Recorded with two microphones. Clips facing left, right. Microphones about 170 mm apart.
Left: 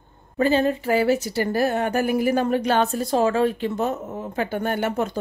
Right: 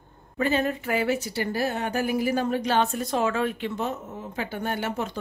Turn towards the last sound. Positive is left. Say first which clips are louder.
# left 5 dB
turn(degrees=50)  # may be behind; listen again after turning